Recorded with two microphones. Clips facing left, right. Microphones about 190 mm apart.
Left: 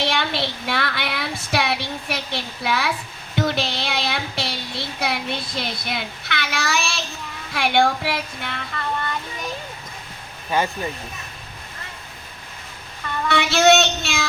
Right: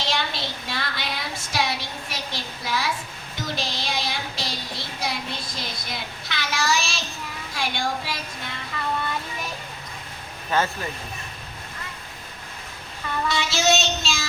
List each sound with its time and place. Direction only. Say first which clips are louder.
0.0 s child singing: left 5 dB; 60° left (ahead or behind)
7.5 s a woman's voice: left 9 dB; 65° left (ahead or behind)
10.5 s speech: left 1 dB; 10° left (ahead or behind)
13.2 s a woman's voice: left 7 dB; 60° left (ahead or behind)